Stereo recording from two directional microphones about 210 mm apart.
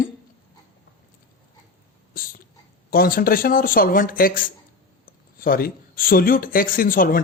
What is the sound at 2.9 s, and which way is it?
Speech, 45° left (ahead or behind).